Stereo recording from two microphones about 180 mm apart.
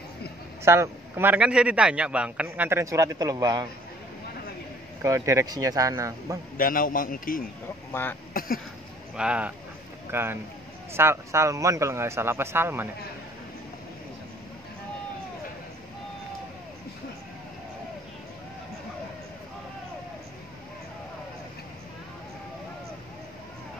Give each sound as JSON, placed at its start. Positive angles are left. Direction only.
{"t": 0.7, "sound": "a man's voice", "side_deg": -15}
{"t": 5.0, "sound": "a man's voice", "side_deg": -15}
{"t": 6.5, "sound": "a man's voice", "side_deg": 50}
{"t": 7.9, "sound": "speech", "side_deg": 10}
{"t": 8.3, "sound": "a sound", "side_deg": 55}
{"t": 9.1, "sound": "a man's voice", "side_deg": -5}